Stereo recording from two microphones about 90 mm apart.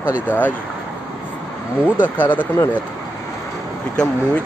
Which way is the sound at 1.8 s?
20° left (ahead or behind).